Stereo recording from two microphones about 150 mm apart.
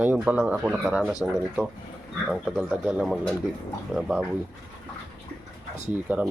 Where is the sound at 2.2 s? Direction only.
Centre (ahead or behind).